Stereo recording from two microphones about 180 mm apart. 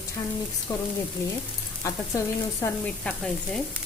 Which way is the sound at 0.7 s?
15° left (ahead or behind).